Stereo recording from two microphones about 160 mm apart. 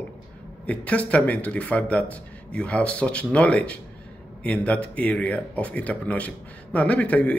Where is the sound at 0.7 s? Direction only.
10° left (ahead or behind).